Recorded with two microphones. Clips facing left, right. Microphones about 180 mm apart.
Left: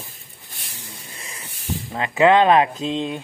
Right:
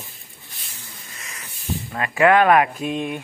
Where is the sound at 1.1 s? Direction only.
30° left (ahead or behind).